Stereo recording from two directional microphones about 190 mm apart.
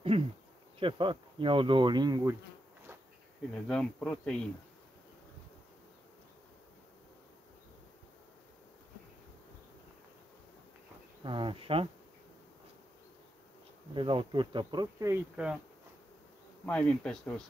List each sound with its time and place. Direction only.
0.1 s insect: 30° right (ahead or behind)
0.7 s speech: 25° right (ahead or behind)
3.6 s speech: 5° left (ahead or behind)
11.2 s speech: 25° right (ahead or behind)
13.9 s speech: 25° right (ahead or behind)
15.4 s speech: 5° right (ahead or behind)
16.6 s speech: 5° left (ahead or behind)